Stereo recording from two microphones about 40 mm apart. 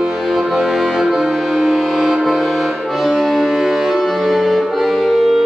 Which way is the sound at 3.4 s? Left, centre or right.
Centre.